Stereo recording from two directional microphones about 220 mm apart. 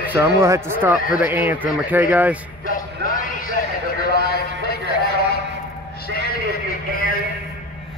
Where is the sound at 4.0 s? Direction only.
45° left (ahead or behind).